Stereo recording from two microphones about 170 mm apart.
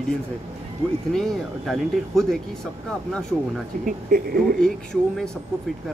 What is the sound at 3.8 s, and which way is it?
Speech, 60° right (ahead or behind).